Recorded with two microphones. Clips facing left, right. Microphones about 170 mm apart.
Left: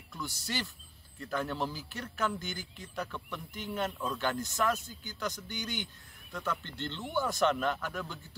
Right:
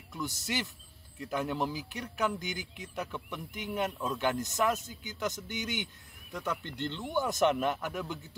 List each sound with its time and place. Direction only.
0.1 s speech: 20° right (ahead or behind)